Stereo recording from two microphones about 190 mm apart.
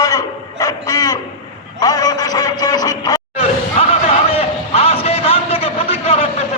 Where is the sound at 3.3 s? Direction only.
30° left (ahead or behind).